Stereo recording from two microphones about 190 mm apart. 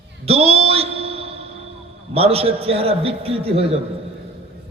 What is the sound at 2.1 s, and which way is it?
A man's voice, 30° right (ahead or behind).